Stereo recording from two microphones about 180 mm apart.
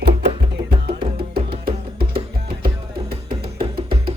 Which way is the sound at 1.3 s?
60° right (ahead or behind).